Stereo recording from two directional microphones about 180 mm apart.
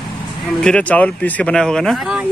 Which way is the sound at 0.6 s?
5° left (ahead or behind).